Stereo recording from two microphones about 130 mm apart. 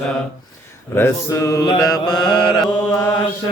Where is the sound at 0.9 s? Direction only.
20° left (ahead or behind); by 2.6 s 40° left (ahead or behind).